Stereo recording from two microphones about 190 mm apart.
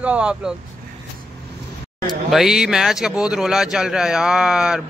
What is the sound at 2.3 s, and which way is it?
Speech, centre (ahead or behind).